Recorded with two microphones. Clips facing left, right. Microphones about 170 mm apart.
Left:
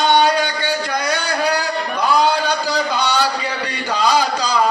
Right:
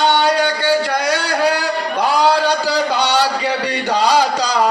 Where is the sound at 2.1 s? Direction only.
70° right (ahead or behind).